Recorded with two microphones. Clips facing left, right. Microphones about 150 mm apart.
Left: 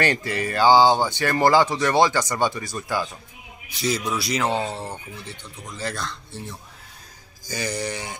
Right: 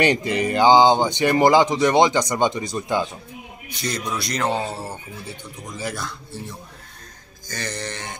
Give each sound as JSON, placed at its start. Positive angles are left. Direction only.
{"t": 0.0, "sound": "speech", "side_deg": -20}
{"t": 3.6, "sound": "a man's voice", "side_deg": 5}
{"t": 7.4, "sound": "mantra", "side_deg": 10}